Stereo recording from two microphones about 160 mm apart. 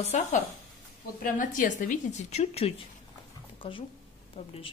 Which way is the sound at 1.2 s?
55° left (ahead or behind).